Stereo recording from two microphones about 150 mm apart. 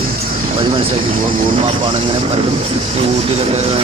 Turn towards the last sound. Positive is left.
turn(degrees=-40)  # may be behind; listen again after turning